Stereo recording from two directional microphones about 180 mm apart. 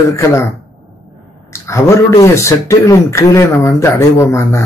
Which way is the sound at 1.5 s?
15° left (ahead or behind).